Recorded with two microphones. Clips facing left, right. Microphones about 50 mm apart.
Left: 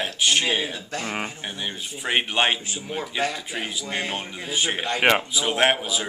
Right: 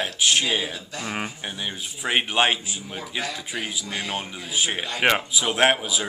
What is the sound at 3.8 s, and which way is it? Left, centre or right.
Speech, left.